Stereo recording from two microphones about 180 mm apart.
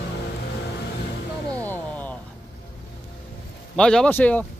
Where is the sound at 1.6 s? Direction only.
10° left (ahead or behind).